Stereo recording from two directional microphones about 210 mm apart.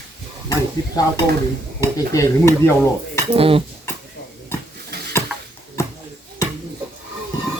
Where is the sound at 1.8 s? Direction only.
15° left (ahead or behind).